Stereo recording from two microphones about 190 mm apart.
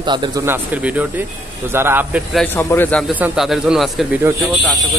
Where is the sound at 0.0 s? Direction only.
25° right (ahead or behind).